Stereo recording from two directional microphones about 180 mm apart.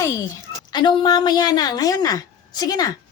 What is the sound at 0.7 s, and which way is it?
A woman's voice, 25° left (ahead or behind).